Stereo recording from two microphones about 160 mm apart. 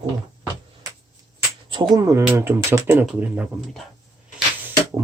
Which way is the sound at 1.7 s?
25° right (ahead or behind).